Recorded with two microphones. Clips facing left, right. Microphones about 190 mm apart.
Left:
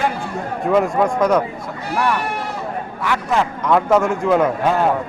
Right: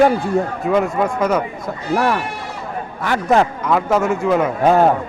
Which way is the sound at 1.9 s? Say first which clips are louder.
Right 2 dB; 40° right (ahead or behind).